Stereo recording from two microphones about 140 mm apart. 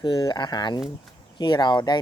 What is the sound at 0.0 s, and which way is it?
Speech, 35° left (ahead or behind).